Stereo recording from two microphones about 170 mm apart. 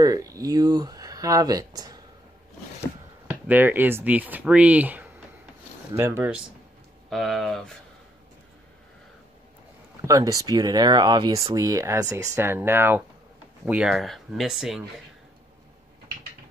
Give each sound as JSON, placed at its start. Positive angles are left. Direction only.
{"t": 0.0, "sound": "speech", "side_deg": -20}
{"t": 3.4, "sound": "speech", "side_deg": -10}
{"t": 7.1, "sound": "speech", "side_deg": 0}
{"t": 10.0, "sound": "speech", "side_deg": -20}